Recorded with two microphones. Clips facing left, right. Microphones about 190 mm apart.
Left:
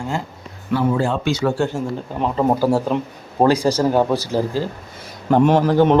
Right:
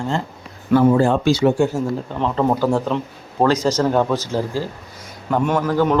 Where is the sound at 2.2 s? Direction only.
10° left (ahead or behind).